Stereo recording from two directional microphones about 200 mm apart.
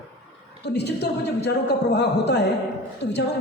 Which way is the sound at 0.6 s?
55° left (ahead or behind).